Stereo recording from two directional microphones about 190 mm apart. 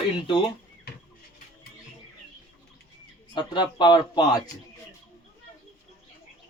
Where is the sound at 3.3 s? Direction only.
25° left (ahead or behind).